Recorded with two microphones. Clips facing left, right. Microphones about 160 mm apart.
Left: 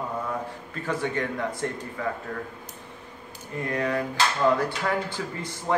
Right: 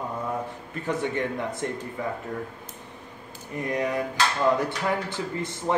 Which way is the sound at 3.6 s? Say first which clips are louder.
Even; 15° right (ahead or behind).